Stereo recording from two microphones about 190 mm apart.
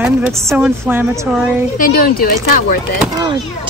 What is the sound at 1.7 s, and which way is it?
Speech, 50° left (ahead or behind).